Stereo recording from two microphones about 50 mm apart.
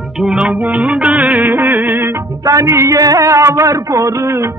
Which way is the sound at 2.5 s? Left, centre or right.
Right.